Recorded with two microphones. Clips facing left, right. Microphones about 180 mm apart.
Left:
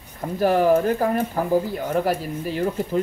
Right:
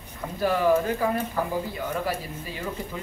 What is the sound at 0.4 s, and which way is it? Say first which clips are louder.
Speech: left 4 dB; 45° left (ahead or behind).